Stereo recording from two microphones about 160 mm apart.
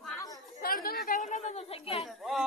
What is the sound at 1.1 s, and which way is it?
Speech, 50° left (ahead or behind).